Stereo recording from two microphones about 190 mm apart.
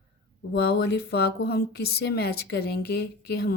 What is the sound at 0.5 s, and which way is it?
Speech, 55° left (ahead or behind).